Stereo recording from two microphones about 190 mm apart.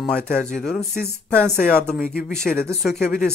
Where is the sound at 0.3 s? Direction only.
40° left (ahead or behind).